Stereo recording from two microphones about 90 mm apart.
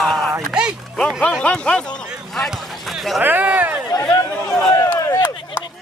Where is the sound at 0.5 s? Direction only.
10° right (ahead or behind).